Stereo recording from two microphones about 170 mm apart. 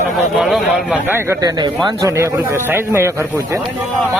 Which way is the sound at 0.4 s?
Centre (ahead or behind).